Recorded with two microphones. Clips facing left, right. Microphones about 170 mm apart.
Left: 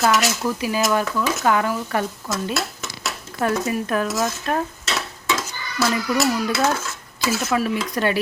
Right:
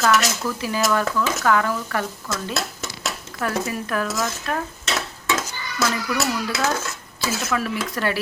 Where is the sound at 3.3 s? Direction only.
25° left (ahead or behind).